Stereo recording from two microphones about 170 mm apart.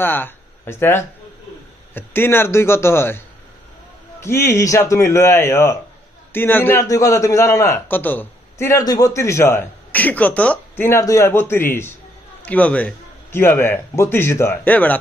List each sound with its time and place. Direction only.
0.0 s a man's voice: 10° left (ahead or behind)
4.2 s a man's voice: 15° left (ahead or behind)